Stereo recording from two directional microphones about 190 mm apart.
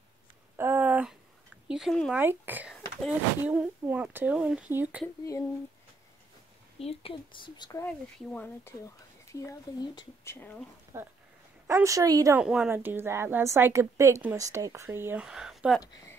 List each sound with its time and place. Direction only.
0.6 s a sound: 10° right (ahead or behind)
1.7 s a woman's voice: centre (ahead or behind)
5.0 s speech: 15° left (ahead or behind)
6.8 s speech: 30° left (ahead or behind)
7.8 s speech: 10° left (ahead or behind)
10.9 s a woman's voice: 15° right (ahead or behind)
12.4 s a woman's voice: 5° right (ahead or behind)